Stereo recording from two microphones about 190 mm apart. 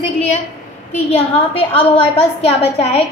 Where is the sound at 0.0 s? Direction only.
35° left (ahead or behind).